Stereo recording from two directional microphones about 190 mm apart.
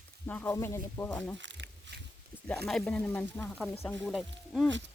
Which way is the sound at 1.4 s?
75° right (ahead or behind).